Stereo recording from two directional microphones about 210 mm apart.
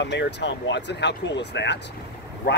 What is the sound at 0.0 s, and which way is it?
Speech, 55° left (ahead or behind).